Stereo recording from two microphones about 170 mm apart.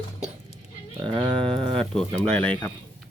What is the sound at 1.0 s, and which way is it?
Speech, 5° left (ahead or behind).